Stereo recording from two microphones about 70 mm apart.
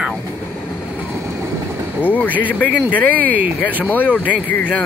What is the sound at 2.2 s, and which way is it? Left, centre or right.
Speech, right.